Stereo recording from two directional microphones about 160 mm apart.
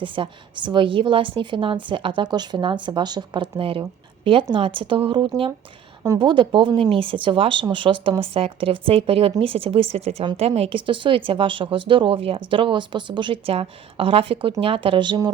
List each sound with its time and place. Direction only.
0.0 s speech: 30° right (ahead or behind)